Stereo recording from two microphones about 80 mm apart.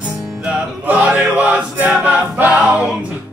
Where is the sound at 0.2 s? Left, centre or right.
Centre.